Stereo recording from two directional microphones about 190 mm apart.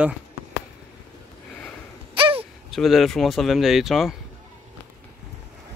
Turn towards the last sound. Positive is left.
turn(degrees=0)  # may be behind; listen again after turning